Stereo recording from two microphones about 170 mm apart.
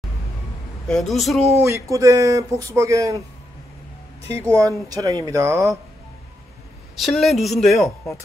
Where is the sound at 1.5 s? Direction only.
15° right (ahead or behind).